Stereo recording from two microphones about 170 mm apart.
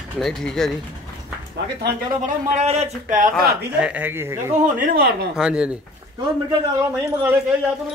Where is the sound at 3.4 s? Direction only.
65° right (ahead or behind).